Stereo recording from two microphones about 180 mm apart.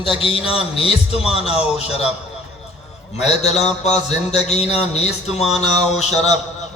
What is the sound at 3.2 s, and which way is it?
Speech, 35° left (ahead or behind).